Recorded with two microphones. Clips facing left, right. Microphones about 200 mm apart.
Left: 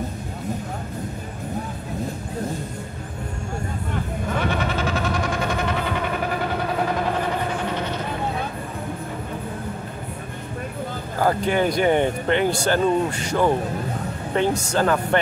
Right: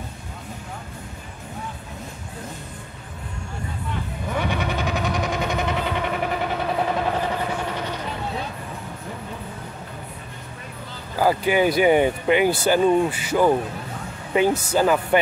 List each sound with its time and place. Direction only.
4.5 s train: 15° right (ahead or behind)
11.1 s speech: 5° right (ahead or behind)